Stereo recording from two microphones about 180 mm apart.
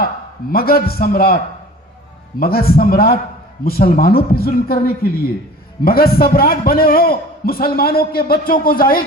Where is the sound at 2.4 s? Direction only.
55° left (ahead or behind).